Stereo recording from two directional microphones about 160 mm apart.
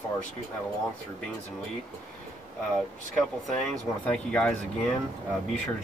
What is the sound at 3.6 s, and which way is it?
Speech, 5° left (ahead or behind).